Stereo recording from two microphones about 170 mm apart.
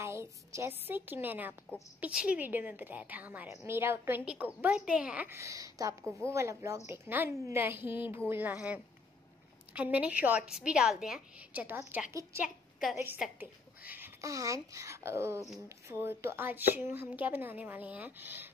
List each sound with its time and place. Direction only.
0.0 s a woman's voice: 15° right (ahead or behind)